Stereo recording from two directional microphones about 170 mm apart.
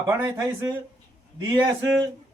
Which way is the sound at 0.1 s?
15° right (ahead or behind).